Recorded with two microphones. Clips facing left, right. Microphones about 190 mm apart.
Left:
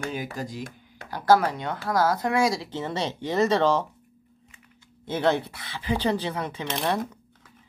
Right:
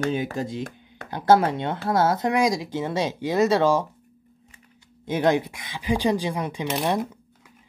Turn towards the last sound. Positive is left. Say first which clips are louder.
# right 3 dB
turn(degrees=-10)  # may be behind; listen again after turning